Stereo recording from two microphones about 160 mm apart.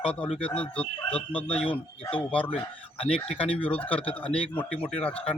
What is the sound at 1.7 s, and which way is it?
Speech, 35° left (ahead or behind).